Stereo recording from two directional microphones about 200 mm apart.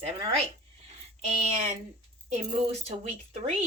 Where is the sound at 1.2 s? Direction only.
35° right (ahead or behind).